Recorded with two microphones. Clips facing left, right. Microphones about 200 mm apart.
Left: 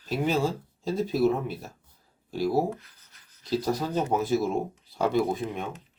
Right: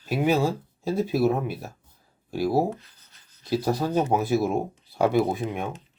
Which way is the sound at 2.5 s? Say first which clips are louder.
Right 2 dB; 30° right (ahead or behind).